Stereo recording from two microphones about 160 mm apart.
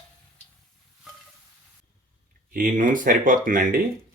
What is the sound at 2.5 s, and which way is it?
Speech, 60° right (ahead or behind).